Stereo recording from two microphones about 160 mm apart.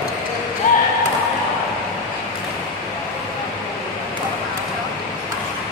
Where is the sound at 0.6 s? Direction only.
60° left (ahead or behind).